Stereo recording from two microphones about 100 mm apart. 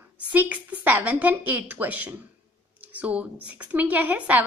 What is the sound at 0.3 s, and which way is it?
A woman's voice, 15° right (ahead or behind).